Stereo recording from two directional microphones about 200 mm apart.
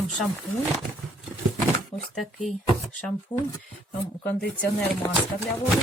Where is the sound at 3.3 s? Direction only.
5° left (ahead or behind).